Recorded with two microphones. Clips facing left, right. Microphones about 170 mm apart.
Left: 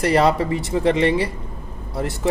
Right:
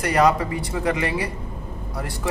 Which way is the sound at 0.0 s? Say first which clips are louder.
Left 2 dB; 30° left (ahead or behind).